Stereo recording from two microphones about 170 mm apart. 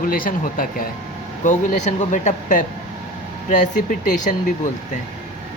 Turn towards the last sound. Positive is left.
turn(degrees=50)  # may be behind; listen again after turning